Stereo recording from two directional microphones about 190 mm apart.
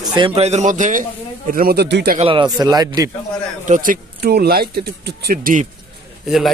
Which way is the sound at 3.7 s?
45° right (ahead or behind).